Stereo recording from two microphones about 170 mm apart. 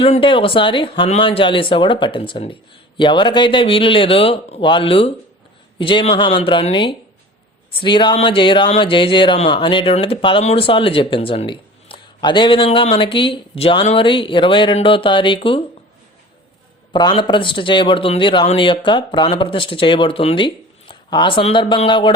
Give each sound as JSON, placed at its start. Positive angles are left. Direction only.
{"t": 0.0, "sound": "a man's voice", "side_deg": 30}
{"t": 16.9, "sound": "a man's voice", "side_deg": 25}